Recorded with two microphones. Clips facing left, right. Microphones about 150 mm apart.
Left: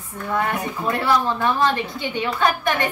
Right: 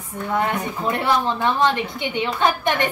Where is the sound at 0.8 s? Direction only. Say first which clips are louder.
Even; 20° right (ahead or behind).